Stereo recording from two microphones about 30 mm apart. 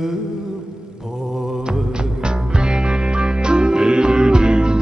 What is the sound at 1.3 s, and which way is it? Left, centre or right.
Mantra, centre.